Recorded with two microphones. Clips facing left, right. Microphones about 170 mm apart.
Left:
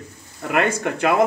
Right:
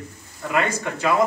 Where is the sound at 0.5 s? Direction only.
60° left (ahead or behind).